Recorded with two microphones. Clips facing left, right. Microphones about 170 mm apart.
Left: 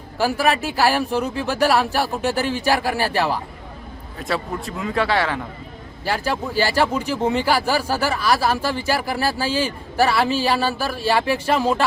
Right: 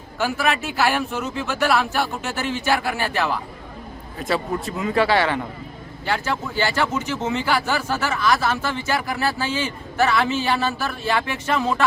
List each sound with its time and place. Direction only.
0.2 s speech: 35° left (ahead or behind)
4.2 s a man's voice: centre (ahead or behind)
6.6 s speech: 35° left (ahead or behind)